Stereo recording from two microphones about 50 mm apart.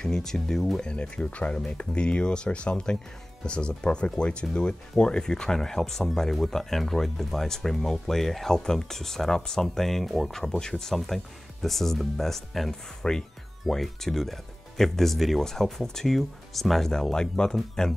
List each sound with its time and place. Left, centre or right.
0.0 s speech: centre
0.7 s speech: centre